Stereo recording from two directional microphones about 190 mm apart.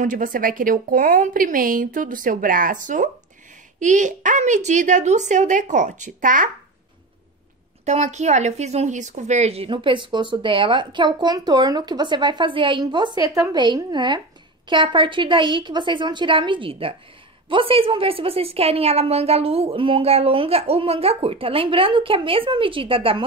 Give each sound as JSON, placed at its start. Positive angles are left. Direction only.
{"t": 0.0, "sound": "a woman's voice", "side_deg": -45}
{"t": 7.8, "sound": "speech", "side_deg": -35}